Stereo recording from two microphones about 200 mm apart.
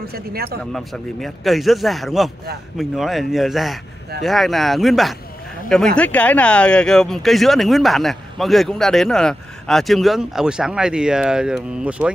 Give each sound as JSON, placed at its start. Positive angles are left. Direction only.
{"t": 0.0, "sound": "speech", "side_deg": -50}
{"t": 0.7, "sound": "speech", "side_deg": 0}